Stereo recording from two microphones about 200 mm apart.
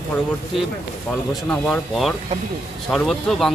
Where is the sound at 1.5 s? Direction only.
Centre (ahead or behind).